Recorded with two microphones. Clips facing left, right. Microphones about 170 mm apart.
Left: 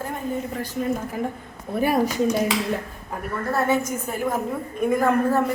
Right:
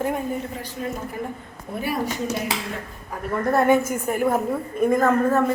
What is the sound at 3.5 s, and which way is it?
Speech, 15° right (ahead or behind).